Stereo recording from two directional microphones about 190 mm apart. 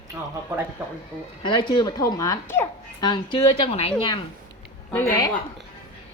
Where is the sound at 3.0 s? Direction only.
25° left (ahead or behind).